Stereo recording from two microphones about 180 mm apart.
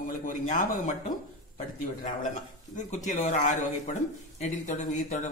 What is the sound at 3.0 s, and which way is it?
Speech, 45° left (ahead or behind).